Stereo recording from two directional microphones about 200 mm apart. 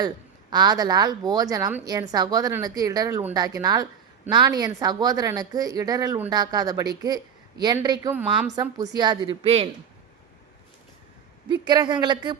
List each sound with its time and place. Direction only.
0.5 s a woman's voice: 20° right (ahead or behind)
8.2 s a woman's voice: 5° right (ahead or behind)
8.8 s a woman's voice: 20° right (ahead or behind)
11.4 s a woman's voice: 20° right (ahead or behind)